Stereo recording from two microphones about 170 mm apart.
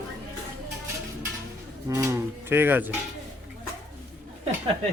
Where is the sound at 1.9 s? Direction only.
20° right (ahead or behind).